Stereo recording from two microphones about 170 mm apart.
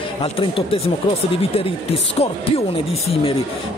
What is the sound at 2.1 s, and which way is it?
A man's voice, 35° left (ahead or behind).